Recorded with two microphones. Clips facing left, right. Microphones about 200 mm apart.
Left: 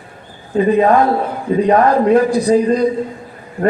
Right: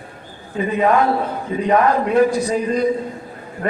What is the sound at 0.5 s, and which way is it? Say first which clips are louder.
A man's voice: left 5 dB; 35° left (ahead or behind).